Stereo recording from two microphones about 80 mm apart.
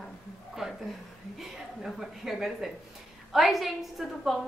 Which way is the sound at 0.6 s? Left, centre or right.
Centre.